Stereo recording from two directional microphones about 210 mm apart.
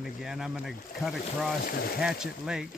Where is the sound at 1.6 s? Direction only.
45° left (ahead or behind).